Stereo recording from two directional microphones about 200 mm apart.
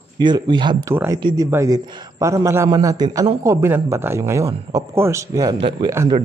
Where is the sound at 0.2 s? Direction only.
20° right (ahead or behind).